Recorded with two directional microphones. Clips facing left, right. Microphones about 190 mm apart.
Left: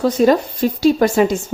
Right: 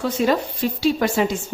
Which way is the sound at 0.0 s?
40° left (ahead or behind).